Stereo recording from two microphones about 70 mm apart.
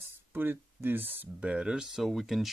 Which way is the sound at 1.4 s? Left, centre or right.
Centre.